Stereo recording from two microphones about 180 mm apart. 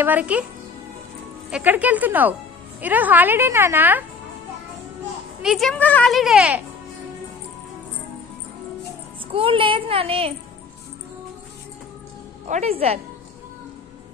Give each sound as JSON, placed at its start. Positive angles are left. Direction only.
{"t": 0.0, "sound": "a woman's voice", "side_deg": -10}
{"t": 1.5, "sound": "a woman's voice", "side_deg": -10}
{"t": 5.4, "sound": "a child's voice", "side_deg": 0}
{"t": 9.3, "sound": "a woman's voice", "side_deg": -30}
{"t": 12.4, "sound": "a woman's voice", "side_deg": -40}